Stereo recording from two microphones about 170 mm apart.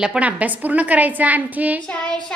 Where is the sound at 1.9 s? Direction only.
5° left (ahead or behind).